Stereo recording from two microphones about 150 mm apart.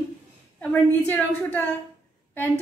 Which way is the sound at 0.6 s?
10° left (ahead or behind).